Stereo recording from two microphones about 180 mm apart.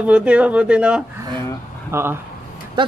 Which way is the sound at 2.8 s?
25° right (ahead or behind).